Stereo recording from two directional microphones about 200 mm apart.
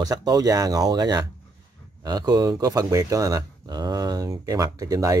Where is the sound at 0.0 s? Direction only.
20° right (ahead or behind).